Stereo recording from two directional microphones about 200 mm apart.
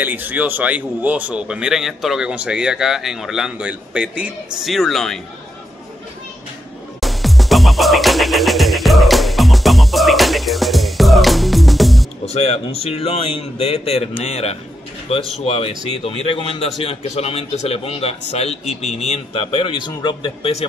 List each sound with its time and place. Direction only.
0.0 s speech: 10° right (ahead or behind)
7.0 s music: centre (ahead or behind)
12.3 s a man's voice: 30° left (ahead or behind)